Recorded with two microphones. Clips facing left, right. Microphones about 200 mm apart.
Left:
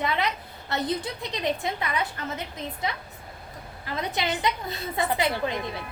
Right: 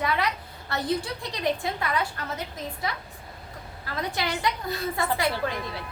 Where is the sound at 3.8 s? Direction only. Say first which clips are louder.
Left 1 dB; 20° left (ahead or behind).